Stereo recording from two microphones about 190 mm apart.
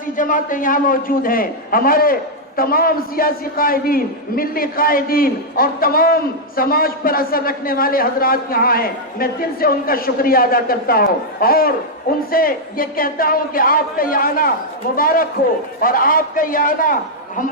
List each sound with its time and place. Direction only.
0.2 s a man's voice: 45° left (ahead or behind)